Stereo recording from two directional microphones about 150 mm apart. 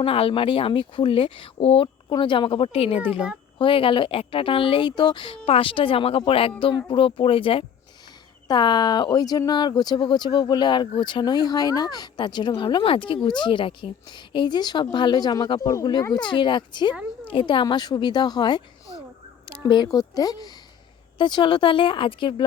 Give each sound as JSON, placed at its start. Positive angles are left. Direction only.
{"t": 0.0, "sound": "speech", "side_deg": 40}
{"t": 3.0, "sound": "a child's voice", "side_deg": -10}
{"t": 3.6, "sound": "speech", "side_deg": 35}